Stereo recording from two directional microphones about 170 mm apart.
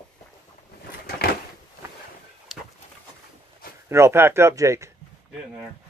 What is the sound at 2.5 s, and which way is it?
Bird, centre (ahead or behind).